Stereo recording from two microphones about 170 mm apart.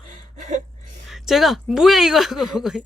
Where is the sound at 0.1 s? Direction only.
45° right (ahead or behind).